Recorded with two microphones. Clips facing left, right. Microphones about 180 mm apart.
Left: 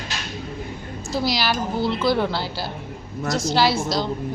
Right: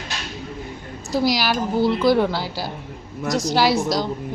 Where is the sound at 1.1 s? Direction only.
15° right (ahead or behind).